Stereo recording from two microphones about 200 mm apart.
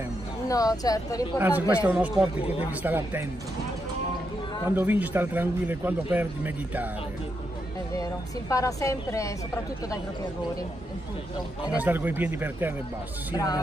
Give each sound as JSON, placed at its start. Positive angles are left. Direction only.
{"t": 0.5, "sound": "a woman's voice", "side_deg": 20}
{"t": 1.4, "sound": "a man's voice", "side_deg": -10}
{"t": 4.6, "sound": "a man's voice", "side_deg": -10}
{"t": 8.0, "sound": "a woman's voice", "side_deg": 15}
{"t": 11.7, "sound": "a man's voice", "side_deg": -10}